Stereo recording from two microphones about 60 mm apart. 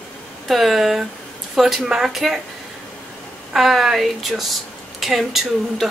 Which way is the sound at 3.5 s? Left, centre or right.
Centre.